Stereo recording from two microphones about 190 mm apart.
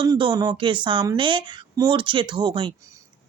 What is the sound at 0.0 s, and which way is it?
A woman's voice, 25° right (ahead or behind).